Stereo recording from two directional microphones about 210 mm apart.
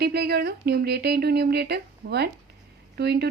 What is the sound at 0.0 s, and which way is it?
Speech, 50° right (ahead or behind).